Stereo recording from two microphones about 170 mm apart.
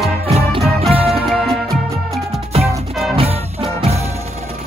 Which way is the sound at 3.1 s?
35° right (ahead or behind).